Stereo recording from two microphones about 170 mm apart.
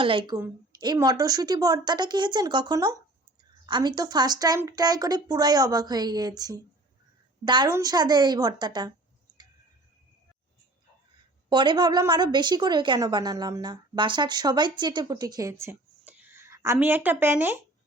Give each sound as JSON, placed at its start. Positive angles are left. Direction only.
{"t": 0.0, "sound": "a woman's voice", "side_deg": -30}
{"t": 11.4, "sound": "a woman's voice", "side_deg": -25}